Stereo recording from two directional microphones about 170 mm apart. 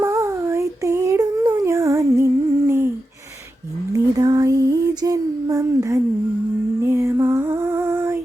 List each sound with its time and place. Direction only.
0.0 s child singing: 15° right (ahead or behind)
3.9 s a sound: 20° right (ahead or behind)
6.8 s lullaby: 15° right (ahead or behind)